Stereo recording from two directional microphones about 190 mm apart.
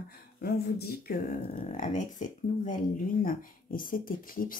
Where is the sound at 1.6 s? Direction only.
45° left (ahead or behind).